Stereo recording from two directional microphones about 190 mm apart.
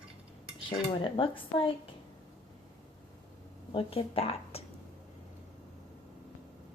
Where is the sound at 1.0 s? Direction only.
25° left (ahead or behind).